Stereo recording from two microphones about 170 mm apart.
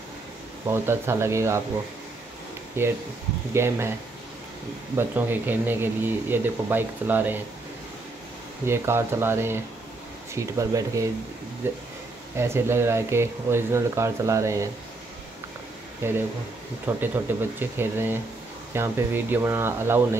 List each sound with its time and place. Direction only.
0.7 s speech: 15° right (ahead or behind)
2.8 s speech: 15° right (ahead or behind)
4.9 s speech: 10° right (ahead or behind)
8.6 s speech: 15° right (ahead or behind)
16.0 s speech: 10° right (ahead or behind)